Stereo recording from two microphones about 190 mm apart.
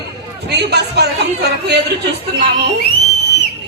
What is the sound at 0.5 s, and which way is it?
A man's voice, 60° right (ahead or behind).